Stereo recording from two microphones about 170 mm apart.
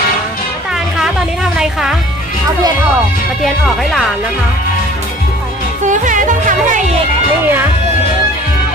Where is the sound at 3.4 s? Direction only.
Centre (ahead or behind).